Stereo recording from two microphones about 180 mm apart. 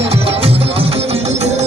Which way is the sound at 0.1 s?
35° right (ahead or behind).